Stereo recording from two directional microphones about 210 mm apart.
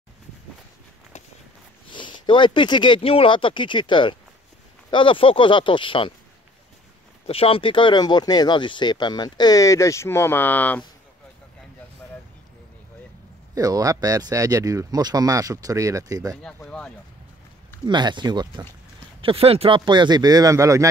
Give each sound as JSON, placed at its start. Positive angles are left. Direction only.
{"t": 1.9, "sound": "speech", "side_deg": 20}
{"t": 7.2, "sound": "speech", "side_deg": 25}
{"t": 13.6, "sound": "speech", "side_deg": -15}
{"t": 16.4, "sound": "speech", "side_deg": 5}
{"t": 17.8, "sound": "speech", "side_deg": -20}